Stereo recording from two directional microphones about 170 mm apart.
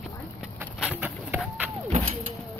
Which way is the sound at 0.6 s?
5° right (ahead or behind).